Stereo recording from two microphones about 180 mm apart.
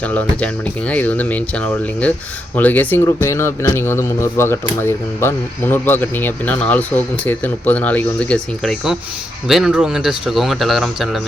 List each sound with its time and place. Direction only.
0.0 s speech: 10° left (ahead or behind)